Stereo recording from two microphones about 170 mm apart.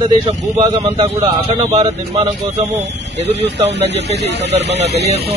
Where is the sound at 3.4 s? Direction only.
90° right; by 5.3 s 75° right (ahead or behind).